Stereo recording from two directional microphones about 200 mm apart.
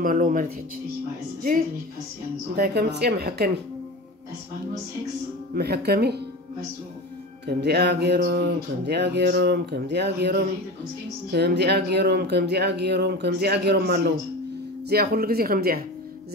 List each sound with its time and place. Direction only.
0.0 s speech: 40° right (ahead or behind)
2.5 s speech: 50° right (ahead or behind)
5.5 s speech: 55° right (ahead or behind)
7.4 s speech: 55° right (ahead or behind)